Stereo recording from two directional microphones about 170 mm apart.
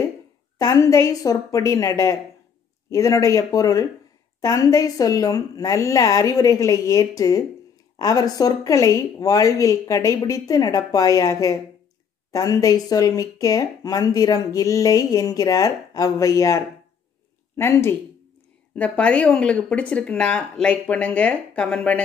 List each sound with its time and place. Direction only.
0.6 s speech: 20° left (ahead or behind)